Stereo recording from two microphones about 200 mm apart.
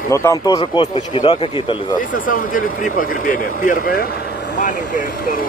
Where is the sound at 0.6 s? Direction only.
30° left (ahead or behind).